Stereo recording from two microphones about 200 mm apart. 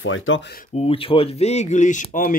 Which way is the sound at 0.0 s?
75° left (ahead or behind).